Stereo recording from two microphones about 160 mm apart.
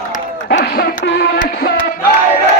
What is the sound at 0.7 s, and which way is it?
Music, 80° left.